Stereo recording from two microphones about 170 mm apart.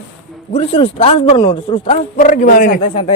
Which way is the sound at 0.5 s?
35° left (ahead or behind).